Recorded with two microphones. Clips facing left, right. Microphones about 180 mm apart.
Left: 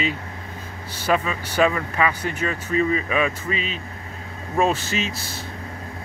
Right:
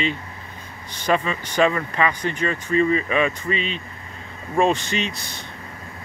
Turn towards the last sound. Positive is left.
turn(degrees=5)  # may be behind; listen again after turning